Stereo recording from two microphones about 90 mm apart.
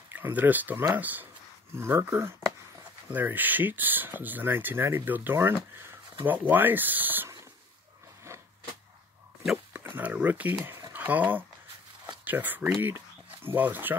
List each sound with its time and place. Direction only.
0.1 s speech: 20° right (ahead or behind)
8.3 s a sound: 30° right (ahead or behind)
9.7 s speech: 20° right (ahead or behind)